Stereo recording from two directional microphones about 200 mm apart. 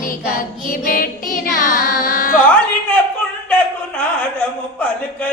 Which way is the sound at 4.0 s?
5° left (ahead or behind).